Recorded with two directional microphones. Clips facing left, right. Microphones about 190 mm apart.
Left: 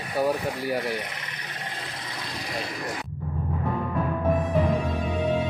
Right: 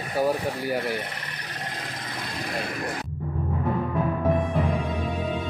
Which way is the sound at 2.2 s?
55° right (ahead or behind).